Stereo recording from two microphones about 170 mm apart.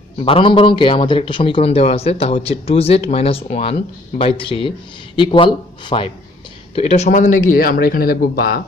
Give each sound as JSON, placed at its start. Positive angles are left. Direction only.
{"t": 0.2, "sound": "a man's voice", "side_deg": 30}